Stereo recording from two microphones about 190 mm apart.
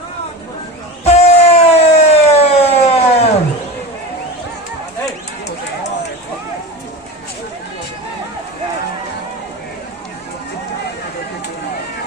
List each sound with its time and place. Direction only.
1.0 s siren: 35° left (ahead or behind)